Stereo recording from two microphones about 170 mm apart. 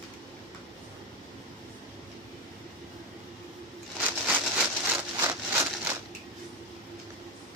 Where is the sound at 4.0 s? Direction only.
10° right (ahead or behind).